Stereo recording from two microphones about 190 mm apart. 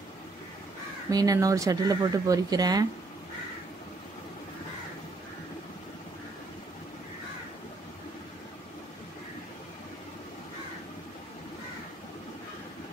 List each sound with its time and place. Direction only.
1.1 s speech: 20° right (ahead or behind)